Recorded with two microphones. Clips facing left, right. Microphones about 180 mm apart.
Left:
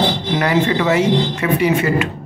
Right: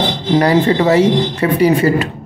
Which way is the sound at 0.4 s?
35° right (ahead or behind).